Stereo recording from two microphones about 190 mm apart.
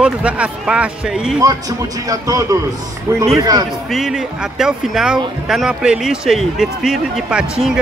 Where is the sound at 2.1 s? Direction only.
20° right (ahead or behind).